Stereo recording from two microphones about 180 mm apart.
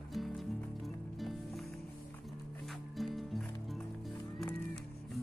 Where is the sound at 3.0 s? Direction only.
Centre (ahead or behind).